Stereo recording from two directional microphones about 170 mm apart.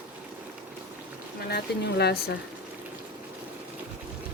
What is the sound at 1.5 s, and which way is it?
Speech, 70° left (ahead or behind).